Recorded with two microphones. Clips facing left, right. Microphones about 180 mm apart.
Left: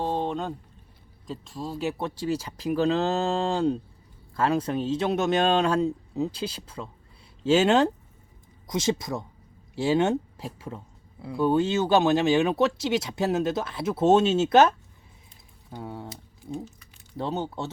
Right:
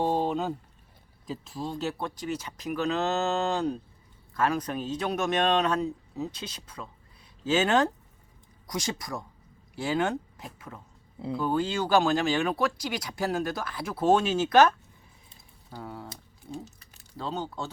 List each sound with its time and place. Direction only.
0.0 s a man's voice: 10° right (ahead or behind)
1.8 s speech: 20° left (ahead or behind)
15.7 s speech: 20° left (ahead or behind)